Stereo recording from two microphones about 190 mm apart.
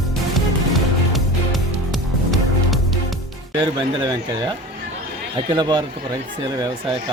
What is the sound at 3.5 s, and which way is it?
Speech, 25° right (ahead or behind).